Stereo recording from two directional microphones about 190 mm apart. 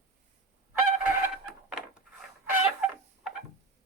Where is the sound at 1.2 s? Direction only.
5° right (ahead or behind).